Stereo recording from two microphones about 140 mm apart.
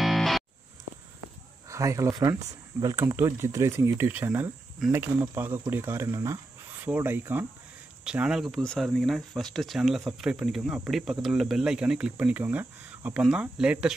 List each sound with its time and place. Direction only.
0.0 s music: centre (ahead or behind)
1.7 s speech: 20° right (ahead or behind); by 13.9 s 5° right (ahead or behind)